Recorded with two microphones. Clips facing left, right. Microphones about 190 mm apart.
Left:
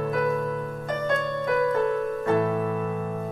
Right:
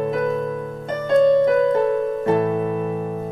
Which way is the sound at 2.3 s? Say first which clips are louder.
Right 4 dB; 20° right (ahead or behind).